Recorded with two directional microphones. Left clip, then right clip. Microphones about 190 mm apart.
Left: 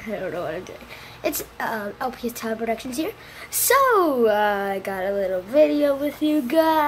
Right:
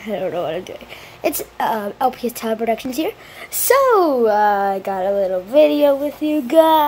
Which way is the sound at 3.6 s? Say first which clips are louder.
Right 4 dB; 20° right (ahead or behind).